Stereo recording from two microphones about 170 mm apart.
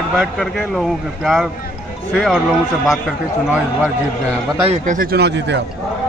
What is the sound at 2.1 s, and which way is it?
Speech, centre (ahead or behind).